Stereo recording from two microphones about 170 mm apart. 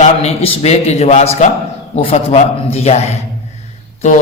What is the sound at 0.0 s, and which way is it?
A man's voice, 35° left (ahead or behind).